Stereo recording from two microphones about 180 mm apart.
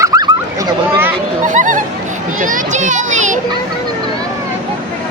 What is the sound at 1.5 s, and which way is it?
Music, 45° right (ahead or behind).